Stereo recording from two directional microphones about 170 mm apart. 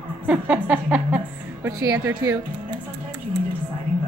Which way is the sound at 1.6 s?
20° right (ahead or behind).